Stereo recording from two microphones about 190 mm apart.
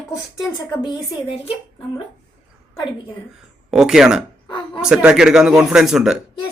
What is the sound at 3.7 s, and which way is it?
Speech, 5° right (ahead or behind).